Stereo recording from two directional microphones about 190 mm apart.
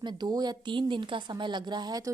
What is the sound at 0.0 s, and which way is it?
A woman's voice, 25° right (ahead or behind).